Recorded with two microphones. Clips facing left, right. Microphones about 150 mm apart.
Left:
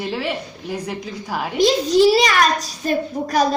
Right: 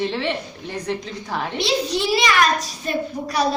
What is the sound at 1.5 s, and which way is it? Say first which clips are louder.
A child's voice: left 8 dB; 45° left (ahead or behind).